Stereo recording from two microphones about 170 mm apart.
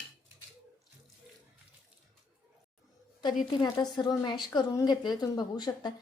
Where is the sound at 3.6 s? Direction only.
25° left (ahead or behind).